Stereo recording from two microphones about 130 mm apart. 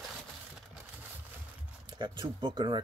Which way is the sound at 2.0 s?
40° right (ahead or behind).